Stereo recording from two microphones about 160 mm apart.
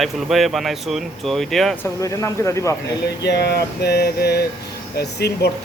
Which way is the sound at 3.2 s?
90° left.